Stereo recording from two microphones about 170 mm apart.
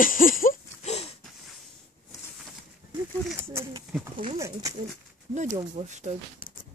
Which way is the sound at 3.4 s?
15° right (ahead or behind).